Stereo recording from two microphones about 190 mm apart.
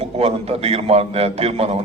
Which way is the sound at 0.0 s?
35° right (ahead or behind).